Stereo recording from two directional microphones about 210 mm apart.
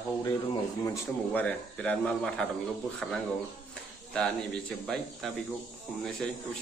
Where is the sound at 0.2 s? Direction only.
15° left (ahead or behind).